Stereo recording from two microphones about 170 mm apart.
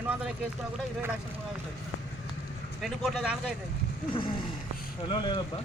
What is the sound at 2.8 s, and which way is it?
Speech, centre (ahead or behind).